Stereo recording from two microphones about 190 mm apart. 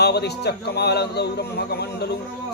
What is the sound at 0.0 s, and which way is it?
Speech, 60° left (ahead or behind).